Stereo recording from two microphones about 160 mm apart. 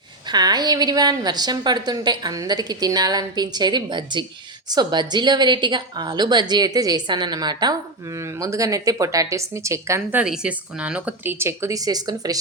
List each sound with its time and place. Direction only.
0.3 s a woman's voice: 25° right (ahead or behind)